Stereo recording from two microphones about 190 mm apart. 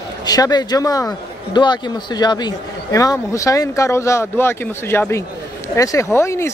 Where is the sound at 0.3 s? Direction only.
20° left (ahead or behind).